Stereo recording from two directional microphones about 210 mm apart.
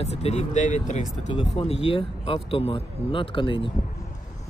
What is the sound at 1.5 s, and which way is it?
Speech, 25° left (ahead or behind).